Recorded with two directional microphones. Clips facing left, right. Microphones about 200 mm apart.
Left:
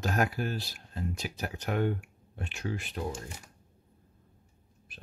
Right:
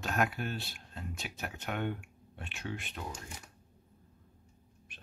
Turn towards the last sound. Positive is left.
turn(degrees=35)  # may be behind; listen again after turning